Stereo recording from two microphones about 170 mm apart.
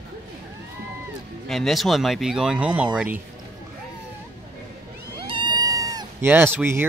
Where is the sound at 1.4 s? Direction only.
Centre (ahead or behind).